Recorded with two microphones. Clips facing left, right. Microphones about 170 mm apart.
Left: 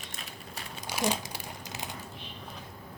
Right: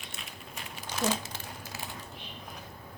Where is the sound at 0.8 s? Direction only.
10° left (ahead or behind).